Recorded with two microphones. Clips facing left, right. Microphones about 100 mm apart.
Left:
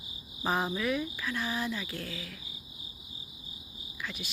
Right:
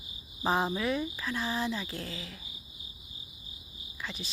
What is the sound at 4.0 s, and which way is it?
Cricket, 30° right (ahead or behind).